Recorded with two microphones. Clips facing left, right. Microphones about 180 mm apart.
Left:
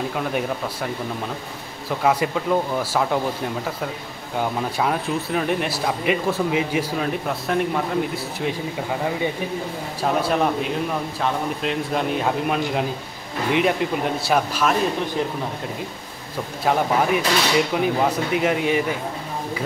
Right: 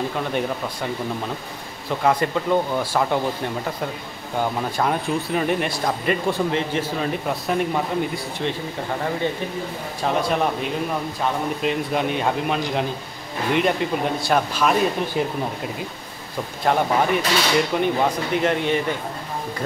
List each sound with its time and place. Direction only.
0.1 s speech: 5° left (ahead or behind)
1.9 s speech: 5° left (ahead or behind)
10.0 s speech: centre (ahead or behind)
15.2 s speech: 10° right (ahead or behind)
16.6 s speech: 5° left (ahead or behind)